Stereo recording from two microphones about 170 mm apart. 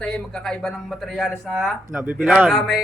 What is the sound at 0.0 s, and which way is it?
Speech, 5° left (ahead or behind).